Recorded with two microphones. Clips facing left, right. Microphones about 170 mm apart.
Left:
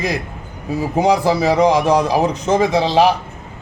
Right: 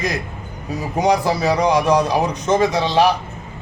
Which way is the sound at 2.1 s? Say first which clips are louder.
Left 2 dB; 30° left (ahead or behind).